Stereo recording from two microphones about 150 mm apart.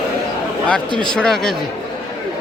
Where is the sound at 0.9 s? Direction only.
5° left (ahead or behind).